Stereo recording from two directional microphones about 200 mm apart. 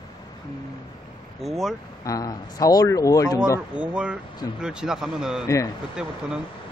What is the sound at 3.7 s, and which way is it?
Speech, 5° right (ahead or behind).